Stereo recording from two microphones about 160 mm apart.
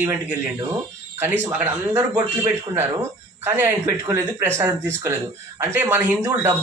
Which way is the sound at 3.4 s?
15° right (ahead or behind).